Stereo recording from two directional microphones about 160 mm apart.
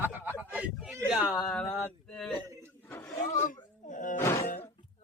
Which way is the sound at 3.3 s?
50° left (ahead or behind).